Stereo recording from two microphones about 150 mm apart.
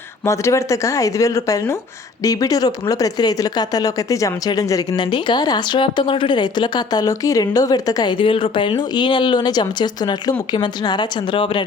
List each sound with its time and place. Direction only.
0.3 s speech: 20° left (ahead or behind)